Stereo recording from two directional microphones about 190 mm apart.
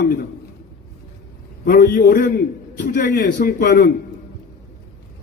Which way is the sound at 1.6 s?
50° left (ahead or behind).